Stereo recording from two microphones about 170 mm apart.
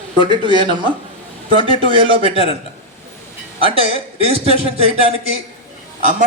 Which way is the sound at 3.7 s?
35° right (ahead or behind).